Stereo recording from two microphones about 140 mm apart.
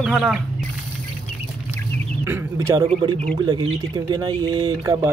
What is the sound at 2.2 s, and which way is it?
Speech, 15° right (ahead or behind).